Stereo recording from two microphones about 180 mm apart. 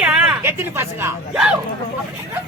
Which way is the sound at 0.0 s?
10° right (ahead or behind).